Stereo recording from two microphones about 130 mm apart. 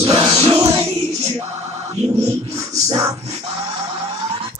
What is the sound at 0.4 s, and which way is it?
Music, 50° right (ahead or behind).